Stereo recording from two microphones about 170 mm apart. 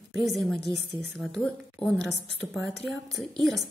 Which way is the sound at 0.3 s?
Centre (ahead or behind).